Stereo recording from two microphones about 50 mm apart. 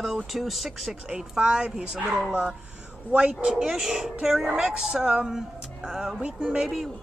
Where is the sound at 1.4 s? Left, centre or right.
Centre.